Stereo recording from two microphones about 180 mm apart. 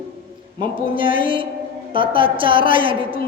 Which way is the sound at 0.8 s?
30° right (ahead or behind).